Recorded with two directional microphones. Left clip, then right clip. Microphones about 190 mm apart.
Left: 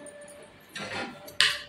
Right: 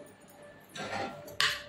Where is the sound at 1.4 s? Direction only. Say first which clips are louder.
Left 5 dB; 60° right (ahead or behind).